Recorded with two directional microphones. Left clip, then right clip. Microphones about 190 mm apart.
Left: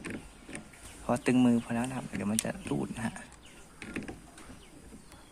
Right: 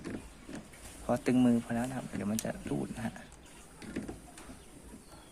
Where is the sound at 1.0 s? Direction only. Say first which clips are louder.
Left 2 dB; 10° left (ahead or behind).